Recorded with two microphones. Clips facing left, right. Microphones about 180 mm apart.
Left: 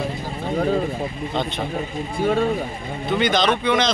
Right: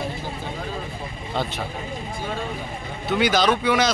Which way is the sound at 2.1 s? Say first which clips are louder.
Left 12 dB; 55° left (ahead or behind).